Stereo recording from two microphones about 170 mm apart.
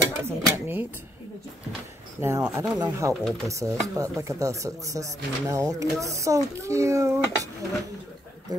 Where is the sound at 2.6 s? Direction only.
20° right (ahead or behind).